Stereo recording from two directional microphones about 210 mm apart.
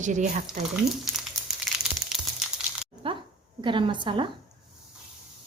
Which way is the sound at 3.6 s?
25° right (ahead or behind).